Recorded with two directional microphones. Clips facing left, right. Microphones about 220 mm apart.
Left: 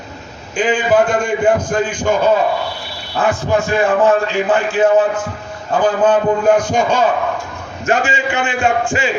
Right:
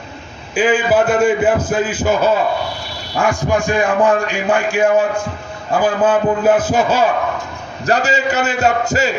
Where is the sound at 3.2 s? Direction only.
15° right (ahead or behind).